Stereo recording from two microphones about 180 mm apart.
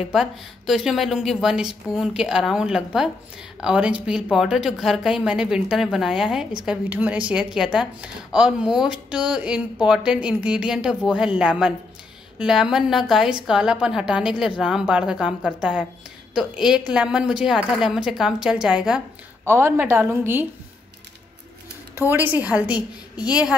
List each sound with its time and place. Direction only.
0.0 s a woman's voice: centre (ahead or behind)
22.1 s a woman's voice: 10° right (ahead or behind)
22.8 s a woman's voice: 25° left (ahead or behind)